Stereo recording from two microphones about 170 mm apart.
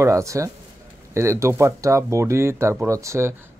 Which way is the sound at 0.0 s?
20° right (ahead or behind).